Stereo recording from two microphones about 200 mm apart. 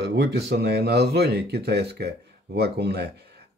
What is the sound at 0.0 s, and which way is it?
Speech, 60° right (ahead or behind).